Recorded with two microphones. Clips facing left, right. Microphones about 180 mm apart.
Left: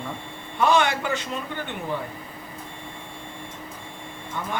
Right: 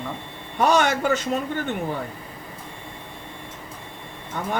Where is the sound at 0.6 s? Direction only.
45° right (ahead or behind).